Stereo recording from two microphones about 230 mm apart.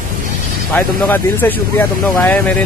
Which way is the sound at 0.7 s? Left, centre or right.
Centre.